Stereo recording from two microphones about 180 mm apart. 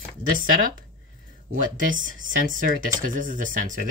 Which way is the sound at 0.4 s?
50° right (ahead or behind).